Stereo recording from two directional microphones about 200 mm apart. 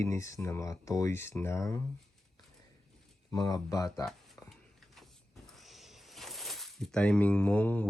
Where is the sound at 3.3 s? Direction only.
20° left (ahead or behind).